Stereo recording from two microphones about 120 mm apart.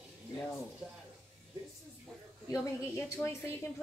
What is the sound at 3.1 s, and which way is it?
Speech, 25° left (ahead or behind).